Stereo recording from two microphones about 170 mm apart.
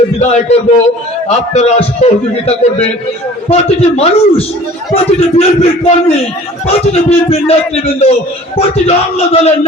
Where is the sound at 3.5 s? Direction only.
40° left (ahead or behind).